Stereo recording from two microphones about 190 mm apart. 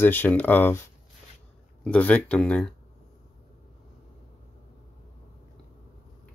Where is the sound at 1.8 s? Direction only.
5° left (ahead or behind).